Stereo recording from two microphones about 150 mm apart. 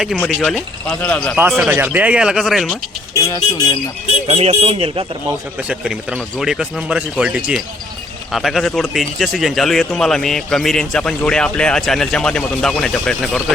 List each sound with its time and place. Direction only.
0.3 s a man's voice: centre (ahead or behind)
1.4 s speech: 10° right (ahead or behind)
3.2 s speech: 25° left (ahead or behind)
4.3 s speech: 45° right (ahead or behind)
5.5 s a man's voice: 5° right (ahead or behind)